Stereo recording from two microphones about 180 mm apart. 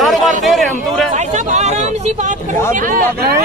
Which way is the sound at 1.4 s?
40° right (ahead or behind).